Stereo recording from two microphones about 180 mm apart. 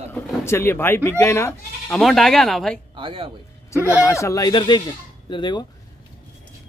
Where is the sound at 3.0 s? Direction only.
30° right (ahead or behind).